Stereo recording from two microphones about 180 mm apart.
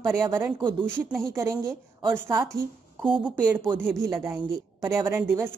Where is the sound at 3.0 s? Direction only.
25° right (ahead or behind).